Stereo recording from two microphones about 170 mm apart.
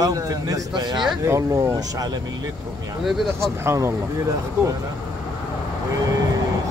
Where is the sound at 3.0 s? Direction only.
Centre (ahead or behind).